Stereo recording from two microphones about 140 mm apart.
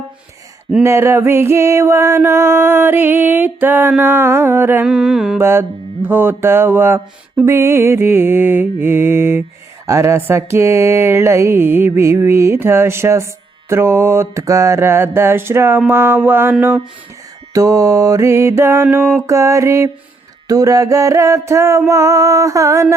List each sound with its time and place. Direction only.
0.8 s mantra: 20° right (ahead or behind)
4.9 s mantra: 5° right (ahead or behind)
5.4 s mantra: 20° right (ahead or behind)
9.8 s a sound: 20° right (ahead or behind)
13.7 s mantra: 20° right (ahead or behind)
17.5 s a sound: 25° right (ahead or behind)